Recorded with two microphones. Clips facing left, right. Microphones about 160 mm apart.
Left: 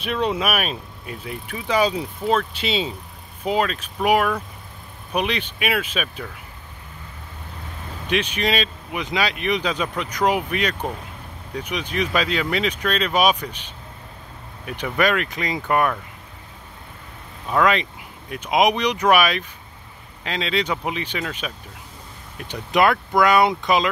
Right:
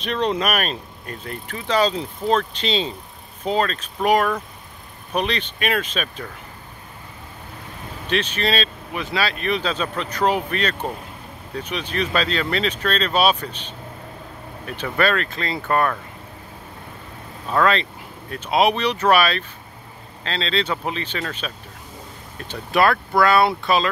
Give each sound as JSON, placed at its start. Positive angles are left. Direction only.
{"t": 0.0, "sound": "speech", "side_deg": 10}
{"t": 8.1, "sound": "speech", "side_deg": 10}
{"t": 14.7, "sound": "speech", "side_deg": 15}
{"t": 17.5, "sound": "speech", "side_deg": 10}